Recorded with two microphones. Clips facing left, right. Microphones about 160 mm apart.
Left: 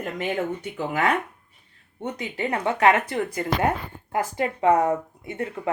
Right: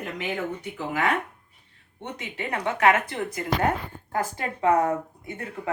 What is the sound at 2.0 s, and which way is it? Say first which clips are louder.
Speech: left 5 dB; 35° left (ahead or behind).